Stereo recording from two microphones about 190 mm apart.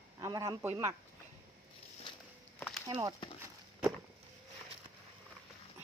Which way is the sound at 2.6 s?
5° left (ahead or behind).